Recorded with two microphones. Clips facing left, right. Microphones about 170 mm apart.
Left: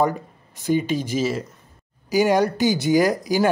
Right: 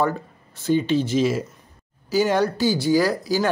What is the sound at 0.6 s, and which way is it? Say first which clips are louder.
Speech: right 2 dB; 10° left (ahead or behind).